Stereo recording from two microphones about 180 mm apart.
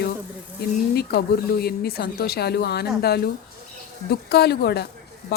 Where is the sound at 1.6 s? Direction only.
60° left (ahead or behind).